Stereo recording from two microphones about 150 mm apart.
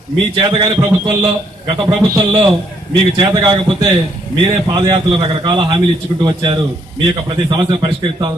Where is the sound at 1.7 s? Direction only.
30° right (ahead or behind).